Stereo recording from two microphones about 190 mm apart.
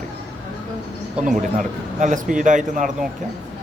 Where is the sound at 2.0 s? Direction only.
40° right (ahead or behind).